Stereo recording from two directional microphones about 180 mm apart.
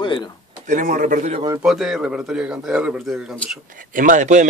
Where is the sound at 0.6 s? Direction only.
45° right (ahead or behind).